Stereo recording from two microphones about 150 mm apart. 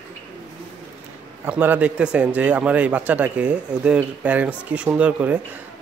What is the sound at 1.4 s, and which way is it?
A man's voice, 10° right (ahead or behind).